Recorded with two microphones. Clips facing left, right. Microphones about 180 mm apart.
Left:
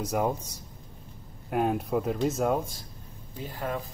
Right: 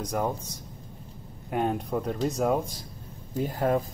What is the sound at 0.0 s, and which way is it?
Speech, 5° left (ahead or behind).